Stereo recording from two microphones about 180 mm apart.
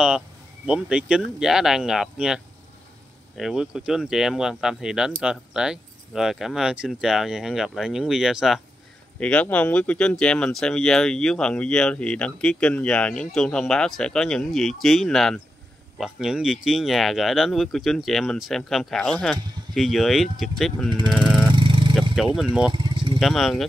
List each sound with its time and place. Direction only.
0.7 s speech: 5° right (ahead or behind)
21.1 s vehicle: centre (ahead or behind)
21.5 s vehicle: 30° right (ahead or behind)
22.1 s speech: centre (ahead or behind)
22.7 s vehicle: 25° right (ahead or behind)
23.1 s speech: centre (ahead or behind)